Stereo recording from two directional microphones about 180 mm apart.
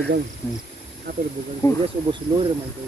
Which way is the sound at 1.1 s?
60° right (ahead or behind).